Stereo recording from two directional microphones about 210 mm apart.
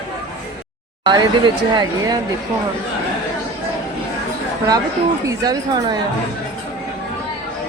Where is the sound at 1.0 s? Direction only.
20° right (ahead or behind).